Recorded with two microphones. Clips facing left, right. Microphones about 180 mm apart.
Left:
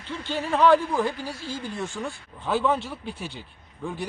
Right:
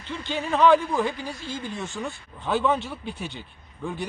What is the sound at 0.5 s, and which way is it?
A man's voice, 5° left (ahead or behind).